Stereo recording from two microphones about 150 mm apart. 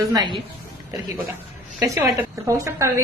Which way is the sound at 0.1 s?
25° right (ahead or behind).